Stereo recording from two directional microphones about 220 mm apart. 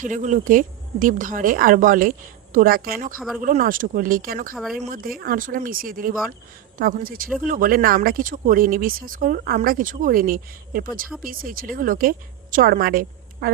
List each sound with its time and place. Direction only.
0.0 s speech: 35° right (ahead or behind)
3.2 s speech: centre (ahead or behind)
3.4 s speech: 40° right (ahead or behind)
4.5 s speech: centre (ahead or behind)
4.8 s speech: 40° right (ahead or behind)